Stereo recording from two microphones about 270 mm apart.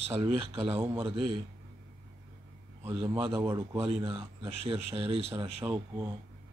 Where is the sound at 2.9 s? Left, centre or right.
Right.